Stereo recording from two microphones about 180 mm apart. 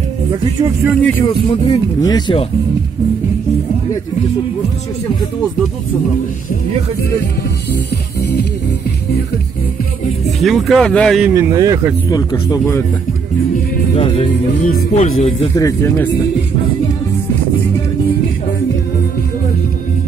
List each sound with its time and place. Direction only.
0.6 s speech: 20° right (ahead or behind)
1.2 s speech: 25° left (ahead or behind)
10.4 s speech: centre (ahead or behind)
11.3 s speech: 15° right (ahead or behind)
12.1 s speech: 20° left (ahead or behind)
13.9 s speech: 30° left (ahead or behind)
14.6 s speech: 55° left (ahead or behind)
15.0 s speech: 35° left (ahead or behind)
15.5 s speech: 15° left (ahead or behind)